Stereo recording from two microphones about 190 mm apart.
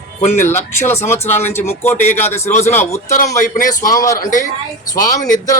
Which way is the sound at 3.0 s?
40° left (ahead or behind).